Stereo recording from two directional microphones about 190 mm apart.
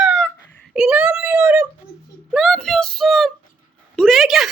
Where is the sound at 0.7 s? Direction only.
5° right (ahead or behind).